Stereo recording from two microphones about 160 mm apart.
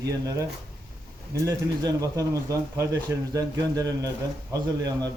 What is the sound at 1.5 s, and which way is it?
Speech, 20° right (ahead or behind).